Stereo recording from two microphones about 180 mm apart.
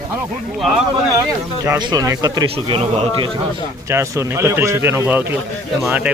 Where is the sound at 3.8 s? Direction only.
15° right (ahead or behind).